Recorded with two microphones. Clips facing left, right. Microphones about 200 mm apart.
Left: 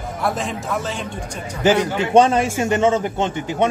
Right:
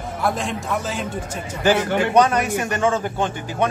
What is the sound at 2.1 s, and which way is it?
A man's voice, 25° left (ahead or behind).